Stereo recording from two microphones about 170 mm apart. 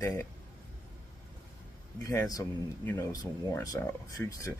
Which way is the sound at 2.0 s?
20° left (ahead or behind).